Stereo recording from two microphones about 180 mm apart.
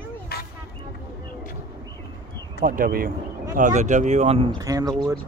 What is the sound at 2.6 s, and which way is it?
Speech, 50° right (ahead or behind).